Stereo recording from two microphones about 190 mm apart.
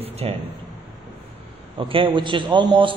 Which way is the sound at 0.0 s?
30° right (ahead or behind).